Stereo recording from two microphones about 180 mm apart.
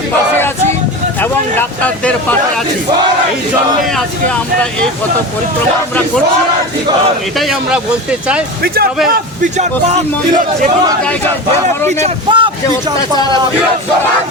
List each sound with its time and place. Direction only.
1.2 s speech: 10° left (ahead or behind)
7.3 s speech: centre (ahead or behind)
8.6 s speech: 60° right (ahead or behind)
9.0 s a man's voice: 50° right (ahead or behind)
12.0 s speech: 30° right (ahead or behind)